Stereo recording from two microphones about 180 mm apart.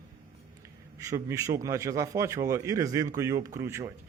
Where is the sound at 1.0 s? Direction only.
20° right (ahead or behind).